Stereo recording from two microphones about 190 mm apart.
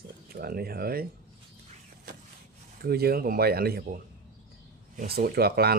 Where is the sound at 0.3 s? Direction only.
55° right (ahead or behind).